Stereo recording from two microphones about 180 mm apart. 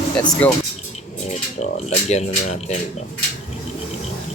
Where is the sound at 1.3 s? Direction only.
40° left (ahead or behind).